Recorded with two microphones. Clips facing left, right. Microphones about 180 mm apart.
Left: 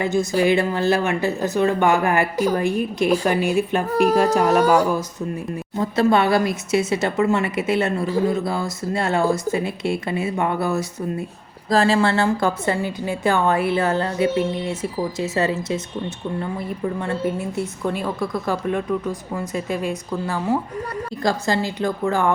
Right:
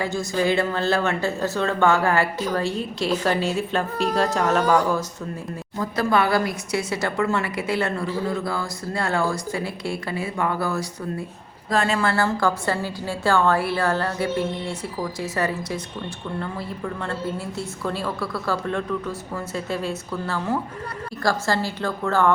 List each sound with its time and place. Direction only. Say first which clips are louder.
0.0 s a woman's voice: left 4 dB; 20° left (ahead or behind)
5.7 s a woman's voice: left 4 dB; 25° left (ahead or behind)
11.7 s a woman's voice: left 4 dB; 30° left (ahead or behind); by 22.3 s 15° left (ahead or behind)